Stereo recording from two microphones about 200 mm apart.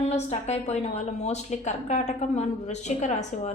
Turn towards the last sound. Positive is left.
turn(degrees=35)  # may be behind; listen again after turning